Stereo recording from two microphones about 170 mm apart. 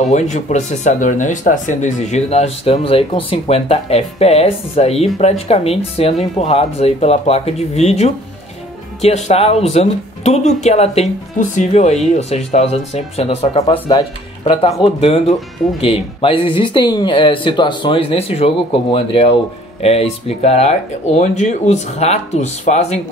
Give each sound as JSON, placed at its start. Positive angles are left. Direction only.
{"t": 0.1, "sound": "speech", "side_deg": 40}
{"t": 13.6, "sound": "speech", "side_deg": 25}